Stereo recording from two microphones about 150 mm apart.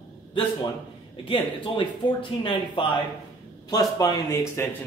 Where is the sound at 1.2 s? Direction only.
35° left (ahead or behind).